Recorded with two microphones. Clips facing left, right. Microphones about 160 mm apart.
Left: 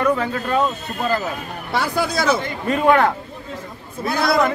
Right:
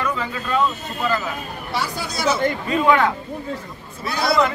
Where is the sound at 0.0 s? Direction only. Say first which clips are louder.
Left 6 dB; 55° left (ahead or behind).